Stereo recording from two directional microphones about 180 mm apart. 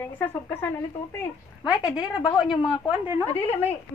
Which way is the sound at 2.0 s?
25° left (ahead or behind).